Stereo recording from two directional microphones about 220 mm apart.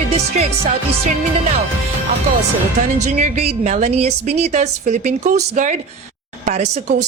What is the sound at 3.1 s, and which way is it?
A woman's voice, 35° right (ahead or behind).